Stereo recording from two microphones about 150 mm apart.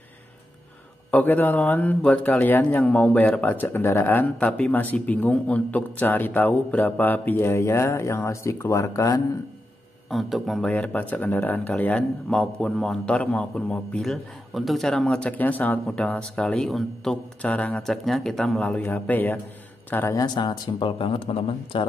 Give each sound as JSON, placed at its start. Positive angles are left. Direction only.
{"t": 1.1, "sound": "speech", "side_deg": 10}
{"t": 10.0, "sound": "speech", "side_deg": 0}
{"t": 20.2, "sound": "speech", "side_deg": 30}